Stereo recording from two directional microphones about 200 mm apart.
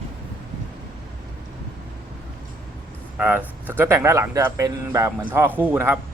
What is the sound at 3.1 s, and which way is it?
Speech, 10° right (ahead or behind).